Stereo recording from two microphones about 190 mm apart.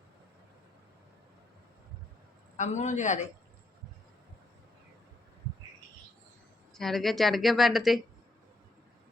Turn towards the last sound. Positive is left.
turn(degrees=0)  # may be behind; listen again after turning